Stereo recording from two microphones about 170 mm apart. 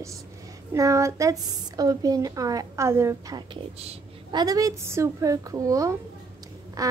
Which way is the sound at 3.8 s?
35° right (ahead or behind).